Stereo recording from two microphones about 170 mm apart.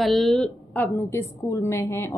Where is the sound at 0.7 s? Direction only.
15° left (ahead or behind).